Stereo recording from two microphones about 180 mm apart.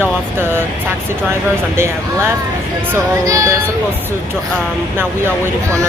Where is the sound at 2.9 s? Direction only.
15° right (ahead or behind).